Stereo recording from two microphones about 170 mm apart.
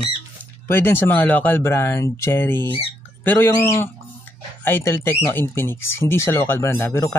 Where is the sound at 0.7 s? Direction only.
15° left (ahead or behind).